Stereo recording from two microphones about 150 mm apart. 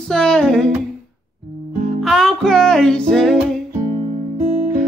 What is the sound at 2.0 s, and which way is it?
Music, centre (ahead or behind).